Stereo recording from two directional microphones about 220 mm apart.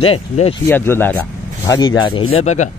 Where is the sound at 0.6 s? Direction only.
10° left (ahead or behind); by 2.7 s 30° left (ahead or behind).